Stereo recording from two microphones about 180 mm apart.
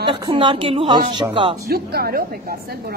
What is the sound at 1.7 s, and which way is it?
Speech, 60° right (ahead or behind).